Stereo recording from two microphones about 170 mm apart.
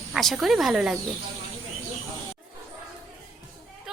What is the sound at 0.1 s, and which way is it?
Speech, centre (ahead or behind).